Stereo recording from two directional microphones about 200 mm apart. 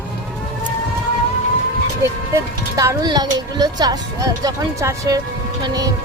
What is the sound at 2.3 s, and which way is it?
Speech, 15° right (ahead or behind).